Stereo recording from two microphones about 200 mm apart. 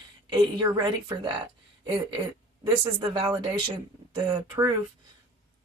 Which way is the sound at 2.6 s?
20° right (ahead or behind).